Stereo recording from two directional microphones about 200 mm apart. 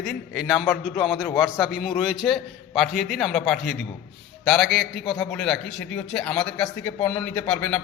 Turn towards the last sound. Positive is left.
turn(degrees=5)  # may be behind; listen again after turning